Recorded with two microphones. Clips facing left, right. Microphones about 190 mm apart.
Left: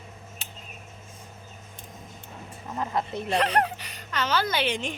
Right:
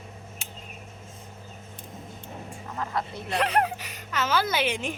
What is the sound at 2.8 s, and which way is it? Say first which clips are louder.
Speech: left 3 dB; 20° left (ahead or behind).